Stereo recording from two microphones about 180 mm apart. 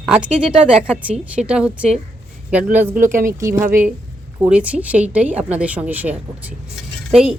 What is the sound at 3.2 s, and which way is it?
A woman's voice, 15° right (ahead or behind).